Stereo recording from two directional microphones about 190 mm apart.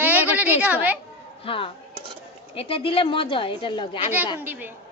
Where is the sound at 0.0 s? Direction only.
10° right (ahead or behind).